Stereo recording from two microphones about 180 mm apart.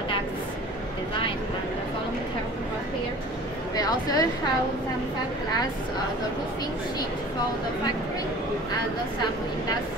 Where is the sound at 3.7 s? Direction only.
20° left (ahead or behind).